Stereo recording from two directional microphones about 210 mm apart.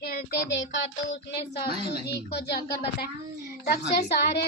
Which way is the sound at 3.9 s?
50° left (ahead or behind).